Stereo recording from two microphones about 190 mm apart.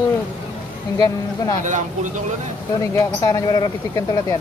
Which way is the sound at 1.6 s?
40° right (ahead or behind).